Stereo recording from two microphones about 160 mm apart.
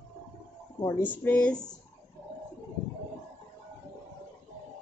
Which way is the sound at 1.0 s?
10° left (ahead or behind).